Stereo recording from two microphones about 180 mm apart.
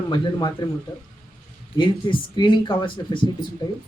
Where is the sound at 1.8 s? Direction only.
25° left (ahead or behind).